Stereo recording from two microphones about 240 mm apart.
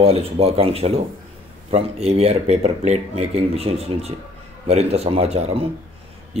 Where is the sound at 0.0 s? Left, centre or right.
Right.